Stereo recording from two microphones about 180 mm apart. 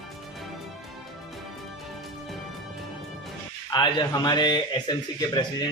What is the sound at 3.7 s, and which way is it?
Speech, 25° left (ahead or behind).